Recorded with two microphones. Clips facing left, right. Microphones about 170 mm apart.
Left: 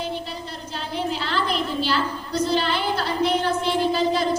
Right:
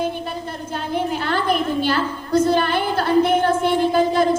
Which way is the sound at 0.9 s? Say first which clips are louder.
Right 3 dB; 50° right (ahead or behind).